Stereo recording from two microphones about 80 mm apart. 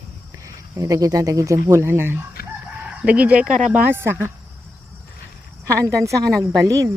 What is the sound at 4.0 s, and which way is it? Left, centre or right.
Speech, right.